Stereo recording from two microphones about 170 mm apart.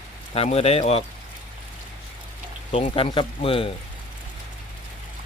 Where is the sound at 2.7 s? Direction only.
30° left (ahead or behind).